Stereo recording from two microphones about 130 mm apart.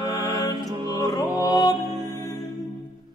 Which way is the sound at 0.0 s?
30° left (ahead or behind).